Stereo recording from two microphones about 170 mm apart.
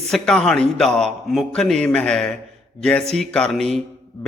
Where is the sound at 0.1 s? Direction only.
5° left (ahead or behind).